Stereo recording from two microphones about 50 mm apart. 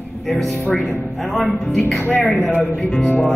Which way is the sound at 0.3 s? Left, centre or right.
Centre.